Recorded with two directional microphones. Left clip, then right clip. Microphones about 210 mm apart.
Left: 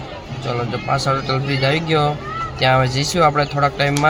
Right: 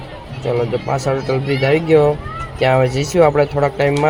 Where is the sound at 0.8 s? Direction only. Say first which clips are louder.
Even; 5° right (ahead or behind).